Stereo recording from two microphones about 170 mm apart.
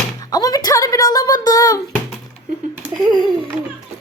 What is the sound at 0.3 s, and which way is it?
Speech, 20° left (ahead or behind).